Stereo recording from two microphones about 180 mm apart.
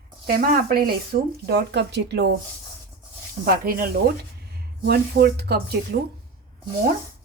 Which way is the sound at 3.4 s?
55° right (ahead or behind).